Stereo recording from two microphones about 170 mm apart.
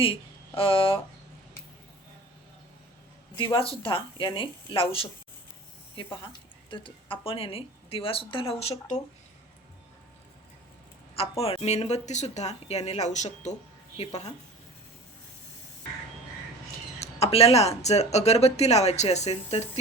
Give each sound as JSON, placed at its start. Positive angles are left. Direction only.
{"t": 0.0, "sound": "speech", "side_deg": 30}
{"t": 3.3, "sound": "speech", "side_deg": 30}
{"t": 11.1, "sound": "speech", "side_deg": 35}
{"t": 17.0, "sound": "speech", "side_deg": 35}